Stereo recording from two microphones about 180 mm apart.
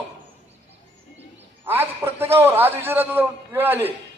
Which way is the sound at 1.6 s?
10° right (ahead or behind).